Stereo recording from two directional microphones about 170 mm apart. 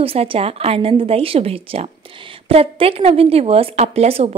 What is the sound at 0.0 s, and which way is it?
A woman's voice, 35° right (ahead or behind).